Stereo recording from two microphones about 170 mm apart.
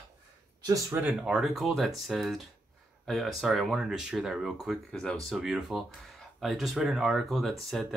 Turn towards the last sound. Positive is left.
turn(degrees=0)  # may be behind; listen again after turning